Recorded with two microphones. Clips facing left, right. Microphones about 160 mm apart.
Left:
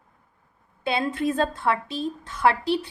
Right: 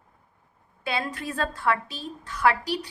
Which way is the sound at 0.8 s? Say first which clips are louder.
Left 6 dB; 25° left (ahead or behind).